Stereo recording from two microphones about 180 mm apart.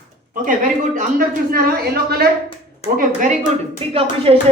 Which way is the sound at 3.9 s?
30° right (ahead or behind).